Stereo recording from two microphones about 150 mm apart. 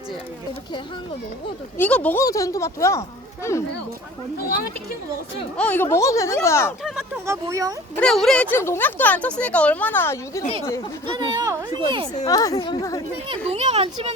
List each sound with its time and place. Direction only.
1.8 s speech: 10° left (ahead or behind)
2.2 s speech: 20° left (ahead or behind)
5.5 s speech: 10° left (ahead or behind)
7.3 s speech: 20° right (ahead or behind)
7.9 s speech: 5° left (ahead or behind)
8.5 s speech: 15° left (ahead or behind)
11.4 s speech: 30° right (ahead or behind)
12.2 s speech: 25° left (ahead or behind)
13.2 s a child's voice: 40° right (ahead or behind)